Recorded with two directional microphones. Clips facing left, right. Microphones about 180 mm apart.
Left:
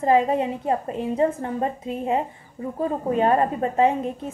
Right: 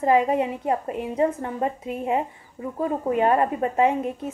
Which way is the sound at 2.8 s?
30° left (ahead or behind).